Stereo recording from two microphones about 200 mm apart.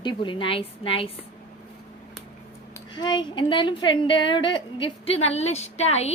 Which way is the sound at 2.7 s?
20° left (ahead or behind).